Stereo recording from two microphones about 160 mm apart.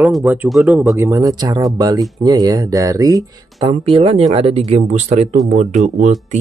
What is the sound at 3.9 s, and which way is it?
Speech, 35° right (ahead or behind).